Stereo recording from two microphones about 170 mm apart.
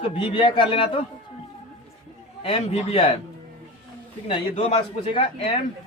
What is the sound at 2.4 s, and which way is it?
Speech, 35° left (ahead or behind).